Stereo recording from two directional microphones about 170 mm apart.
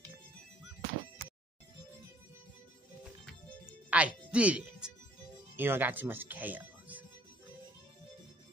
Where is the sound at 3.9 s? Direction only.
10° right (ahead or behind).